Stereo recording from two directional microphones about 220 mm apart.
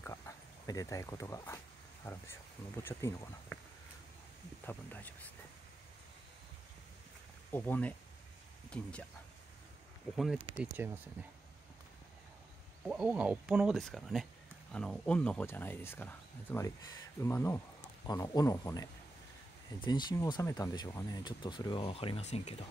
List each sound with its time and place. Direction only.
0.7 s speech: 15° left (ahead or behind)
4.6 s speech: 10° left (ahead or behind)
7.5 s speech: 10° left (ahead or behind)
10.1 s speech: centre (ahead or behind)
12.8 s speech: 5° right (ahead or behind); by 22.7 s 30° left (ahead or behind)